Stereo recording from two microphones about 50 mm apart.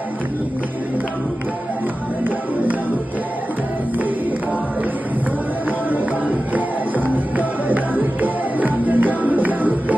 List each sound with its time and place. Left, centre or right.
5.9 s music: right